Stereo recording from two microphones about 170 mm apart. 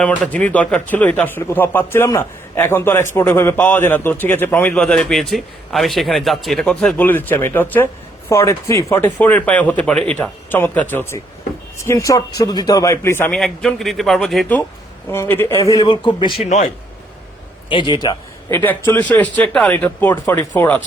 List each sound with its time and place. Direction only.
0.0 s speech: 10° left (ahead or behind)
15.1 s speech: 15° left (ahead or behind); by 16.5 s 30° left (ahead or behind)
16.5 s speech: 40° left (ahead or behind)
17.7 s speech: 30° left (ahead or behind); by 20.8 s 10° left (ahead or behind)